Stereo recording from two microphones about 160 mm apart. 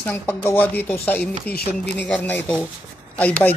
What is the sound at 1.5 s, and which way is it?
Speech, 75° left (ahead or behind).